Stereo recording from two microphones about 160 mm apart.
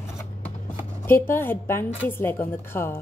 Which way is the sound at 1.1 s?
15° left (ahead or behind).